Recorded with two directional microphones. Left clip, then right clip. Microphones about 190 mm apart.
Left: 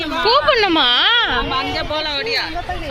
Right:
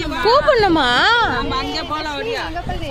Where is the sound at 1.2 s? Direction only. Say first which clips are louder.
Even; 15° left (ahead or behind).